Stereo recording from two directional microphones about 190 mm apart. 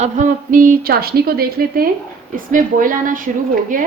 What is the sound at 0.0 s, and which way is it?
Speech, 45° right (ahead or behind).